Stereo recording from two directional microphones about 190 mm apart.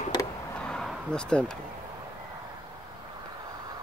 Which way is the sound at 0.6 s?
5° left (ahead or behind).